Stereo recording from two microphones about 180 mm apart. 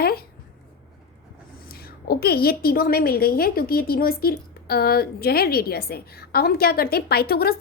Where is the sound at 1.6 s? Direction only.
55° left (ahead or behind).